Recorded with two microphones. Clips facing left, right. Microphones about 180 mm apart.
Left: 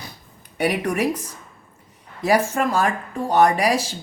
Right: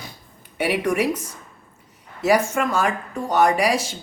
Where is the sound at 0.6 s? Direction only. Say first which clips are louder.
Even; 40° left (ahead or behind).